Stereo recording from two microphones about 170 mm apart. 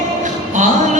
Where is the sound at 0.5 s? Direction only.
45° right (ahead or behind).